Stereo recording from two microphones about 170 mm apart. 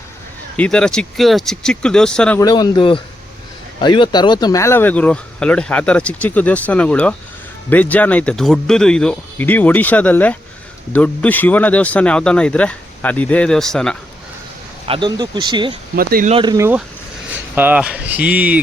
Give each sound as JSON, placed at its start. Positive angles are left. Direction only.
{"t": 0.5, "sound": "speech", "side_deg": 5}
{"t": 2.4, "sound": "speech", "side_deg": 25}
{"t": 14.8, "sound": "speech", "side_deg": -30}
{"t": 16.0, "sound": "speech", "side_deg": -60}
{"t": 16.3, "sound": "speech", "side_deg": -30}
{"t": 16.6, "sound": "speech", "side_deg": -10}